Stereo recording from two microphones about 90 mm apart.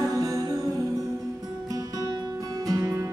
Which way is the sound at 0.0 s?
40° right (ahead or behind).